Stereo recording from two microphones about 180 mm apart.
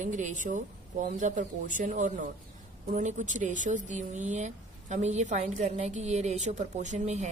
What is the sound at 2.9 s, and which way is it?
Speech, 40° right (ahead or behind).